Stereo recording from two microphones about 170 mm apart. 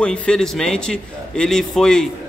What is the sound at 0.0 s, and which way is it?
Speech, 5° left (ahead or behind).